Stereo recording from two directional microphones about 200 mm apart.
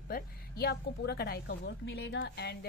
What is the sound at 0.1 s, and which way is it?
A woman's voice, 50° left (ahead or behind).